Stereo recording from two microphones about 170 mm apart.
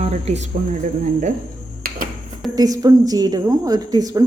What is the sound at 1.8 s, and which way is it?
Finger snapping, 60° right (ahead or behind).